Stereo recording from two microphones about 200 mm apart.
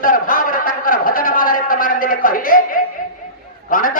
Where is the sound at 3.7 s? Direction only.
45° left (ahead or behind).